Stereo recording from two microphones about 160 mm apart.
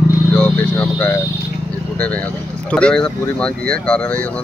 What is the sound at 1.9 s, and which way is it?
Speech, 10° left (ahead or behind).